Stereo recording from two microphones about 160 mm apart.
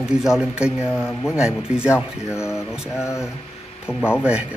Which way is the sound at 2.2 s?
15° left (ahead or behind).